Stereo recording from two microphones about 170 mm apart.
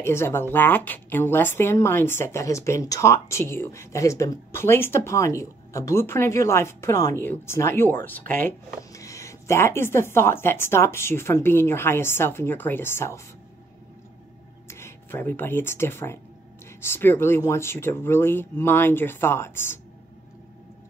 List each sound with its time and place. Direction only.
0.0 s a woman's voice: 15° left (ahead or behind)
14.7 s a woman's voice: 15° left (ahead or behind)